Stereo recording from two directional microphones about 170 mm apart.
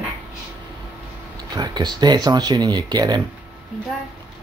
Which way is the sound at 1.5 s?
25° right (ahead or behind).